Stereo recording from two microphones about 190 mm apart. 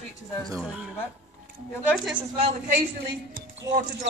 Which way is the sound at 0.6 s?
5° right (ahead or behind).